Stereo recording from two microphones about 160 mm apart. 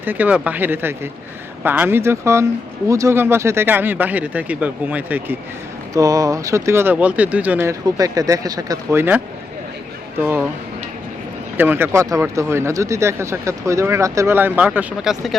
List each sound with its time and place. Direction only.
0.0 s speech: 10° right (ahead or behind)
5.9 s speech: 20° right (ahead or behind)
11.5 s speech: 10° right (ahead or behind)